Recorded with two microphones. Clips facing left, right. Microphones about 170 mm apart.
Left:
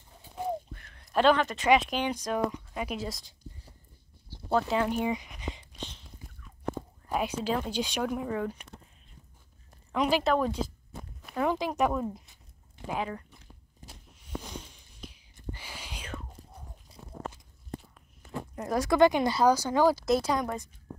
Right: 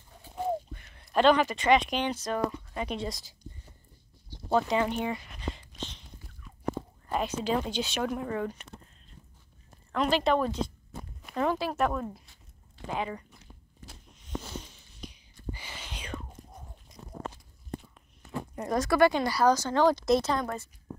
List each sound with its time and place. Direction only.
0.7 s speech: 5° right (ahead or behind)
5.1 s speech: 15° left (ahead or behind)
7.1 s speech: 5° left (ahead or behind)
9.9 s speech: 10° left (ahead or behind)
14.1 s zipper: 10° left (ahead or behind)
14.7 s whispering: 5° left (ahead or behind)
16.9 s a sound: 30° left (ahead or behind)
18.6 s speech: 5° left (ahead or behind)
18.9 s speech: 15° left (ahead or behind)